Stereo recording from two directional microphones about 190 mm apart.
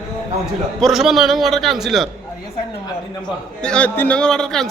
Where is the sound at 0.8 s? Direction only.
Centre (ahead or behind).